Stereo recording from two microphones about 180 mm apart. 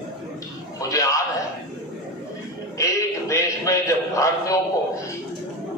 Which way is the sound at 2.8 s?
15° left (ahead or behind).